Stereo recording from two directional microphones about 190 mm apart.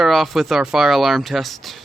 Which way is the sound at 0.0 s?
Centre (ahead or behind).